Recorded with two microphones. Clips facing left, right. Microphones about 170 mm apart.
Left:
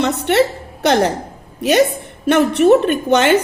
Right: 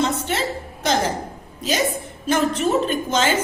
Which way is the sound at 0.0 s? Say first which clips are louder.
Left 8 dB; 65° left (ahead or behind).